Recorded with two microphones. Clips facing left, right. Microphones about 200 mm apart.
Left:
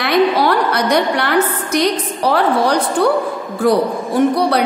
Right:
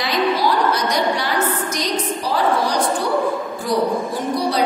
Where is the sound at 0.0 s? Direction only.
60° left (ahead or behind).